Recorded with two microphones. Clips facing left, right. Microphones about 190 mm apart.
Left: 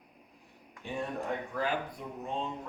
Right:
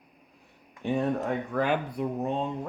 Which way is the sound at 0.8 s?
65° right (ahead or behind).